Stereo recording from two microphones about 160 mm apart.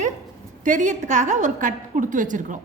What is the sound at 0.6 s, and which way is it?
A woman's voice, 50° right (ahead or behind).